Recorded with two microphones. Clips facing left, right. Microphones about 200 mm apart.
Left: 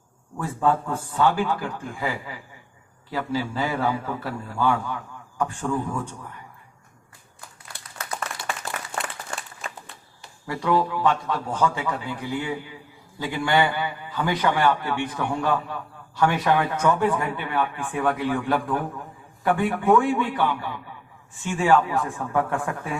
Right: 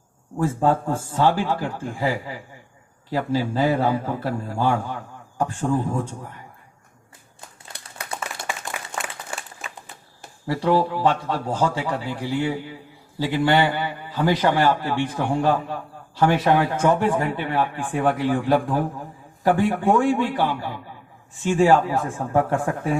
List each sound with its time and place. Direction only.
0.4 s a man's voice: 40° right (ahead or behind)
8.7 s applause: 5° left (ahead or behind)
9.3 s a sound: 10° right (ahead or behind)
10.4 s a man's voice: 35° right (ahead or behind)